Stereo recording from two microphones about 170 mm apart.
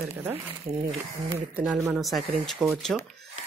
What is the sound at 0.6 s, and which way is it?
Speech, 40° right (ahead or behind).